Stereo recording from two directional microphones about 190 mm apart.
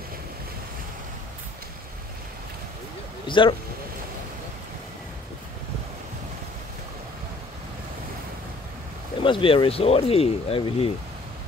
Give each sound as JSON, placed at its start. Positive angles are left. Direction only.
{"t": 3.3, "sound": "speech", "side_deg": 25}
{"t": 9.2, "sound": "speech", "side_deg": 25}